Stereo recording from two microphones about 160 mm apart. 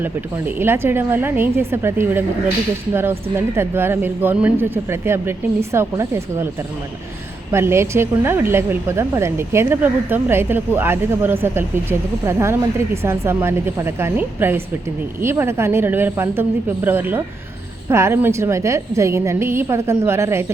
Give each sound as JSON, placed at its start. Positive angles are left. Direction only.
{"t": 0.0, "sound": "a woman's voice", "side_deg": -15}
{"t": 7.5, "sound": "a woman's voice", "side_deg": -15}